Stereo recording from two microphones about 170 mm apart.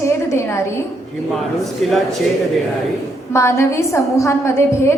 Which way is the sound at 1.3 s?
Centre (ahead or behind).